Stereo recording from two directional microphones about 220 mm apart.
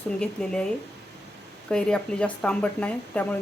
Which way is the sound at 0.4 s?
5° left (ahead or behind).